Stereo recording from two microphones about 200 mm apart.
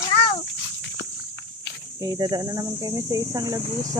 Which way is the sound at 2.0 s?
20° right (ahead or behind).